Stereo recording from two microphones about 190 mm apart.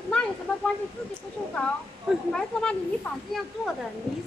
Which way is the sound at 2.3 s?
5° left (ahead or behind).